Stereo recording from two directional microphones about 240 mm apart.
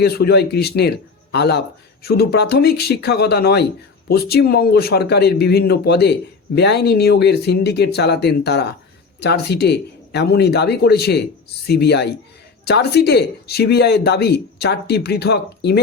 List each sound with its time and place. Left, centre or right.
0.0 s a man's voice: left